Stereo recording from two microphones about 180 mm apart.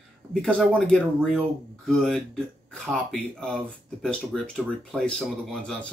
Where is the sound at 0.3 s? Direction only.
5° left (ahead or behind).